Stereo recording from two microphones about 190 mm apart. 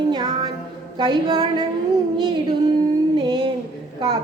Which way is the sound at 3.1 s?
25° right (ahead or behind).